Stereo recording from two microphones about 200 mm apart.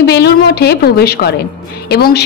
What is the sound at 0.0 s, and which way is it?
A woman's voice, 55° left (ahead or behind).